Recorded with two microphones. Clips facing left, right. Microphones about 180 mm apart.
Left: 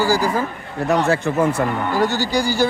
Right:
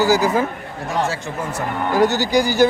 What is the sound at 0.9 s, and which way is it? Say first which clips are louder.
Speech: left 5 dB; 60° left (ahead or behind).